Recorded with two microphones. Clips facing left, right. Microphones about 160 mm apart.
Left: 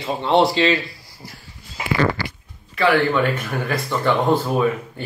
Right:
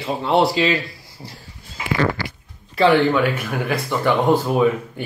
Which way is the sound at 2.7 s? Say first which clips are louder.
Right 3 dB; 25° right (ahead or behind).